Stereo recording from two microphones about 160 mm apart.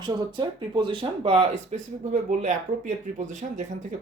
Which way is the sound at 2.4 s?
50° right (ahead or behind).